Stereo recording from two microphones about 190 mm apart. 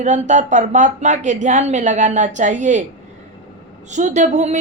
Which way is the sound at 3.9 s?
40° right (ahead or behind).